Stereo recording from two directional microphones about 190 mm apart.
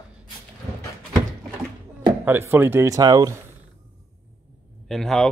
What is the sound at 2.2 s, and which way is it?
Speech, 10° right (ahead or behind).